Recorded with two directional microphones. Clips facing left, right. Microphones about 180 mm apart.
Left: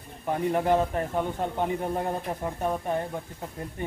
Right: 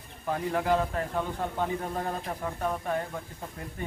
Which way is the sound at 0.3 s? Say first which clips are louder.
Left 3 dB; 20° left (ahead or behind).